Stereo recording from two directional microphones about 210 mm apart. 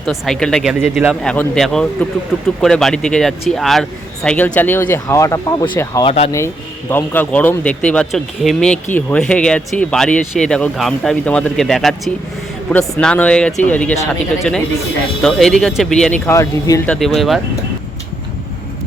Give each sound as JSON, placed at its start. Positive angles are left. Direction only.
{"t": 0.0, "sound": "speech", "side_deg": 0}
{"t": 6.1, "sound": "speech", "side_deg": 30}
{"t": 6.9, "sound": "speech", "side_deg": 10}
{"t": 15.2, "sound": "speech", "side_deg": 0}